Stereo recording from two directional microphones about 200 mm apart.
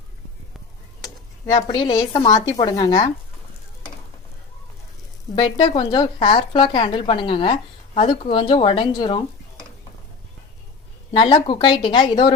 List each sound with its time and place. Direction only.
1.5 s speech: 25° left (ahead or behind)
5.3 s speech: 25° left (ahead or behind)
11.2 s speech: 25° left (ahead or behind)